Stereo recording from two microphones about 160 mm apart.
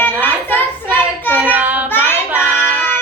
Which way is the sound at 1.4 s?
10° right (ahead or behind).